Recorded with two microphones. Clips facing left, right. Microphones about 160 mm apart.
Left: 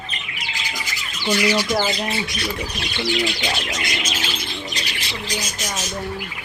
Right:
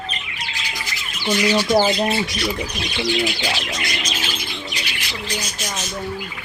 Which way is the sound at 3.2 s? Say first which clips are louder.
Right 1 dB; 5° right (ahead or behind).